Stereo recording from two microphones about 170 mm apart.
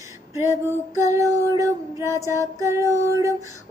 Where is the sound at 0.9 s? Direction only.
20° right (ahead or behind).